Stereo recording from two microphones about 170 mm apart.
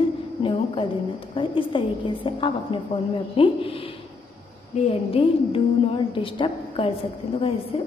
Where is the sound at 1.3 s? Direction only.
30° left (ahead or behind).